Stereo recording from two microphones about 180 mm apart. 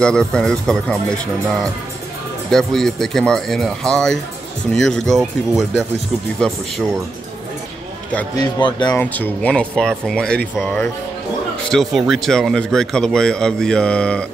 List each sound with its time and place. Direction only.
0.0 s speech: 5° left (ahead or behind)
8.4 s speech: 25° left (ahead or behind)
8.9 s speech: 10° left (ahead or behind)
11.7 s speech: centre (ahead or behind)